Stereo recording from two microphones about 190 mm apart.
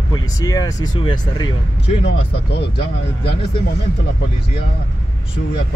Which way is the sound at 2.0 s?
65° left (ahead or behind).